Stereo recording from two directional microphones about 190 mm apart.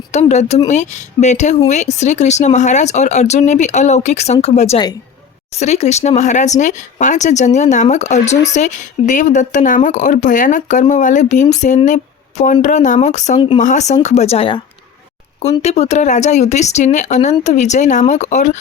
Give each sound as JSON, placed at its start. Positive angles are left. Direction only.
{"t": 0.1, "sound": "speech", "side_deg": 35}
{"t": 15.6, "sound": "speech", "side_deg": 35}